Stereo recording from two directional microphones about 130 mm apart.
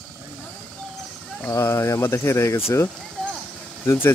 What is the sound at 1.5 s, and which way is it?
Speech, 20° left (ahead or behind).